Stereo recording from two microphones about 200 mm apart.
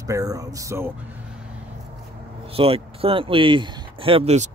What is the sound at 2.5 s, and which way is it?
Speech, 30° right (ahead or behind).